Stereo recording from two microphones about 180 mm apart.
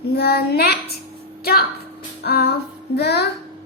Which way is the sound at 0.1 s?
60° left (ahead or behind).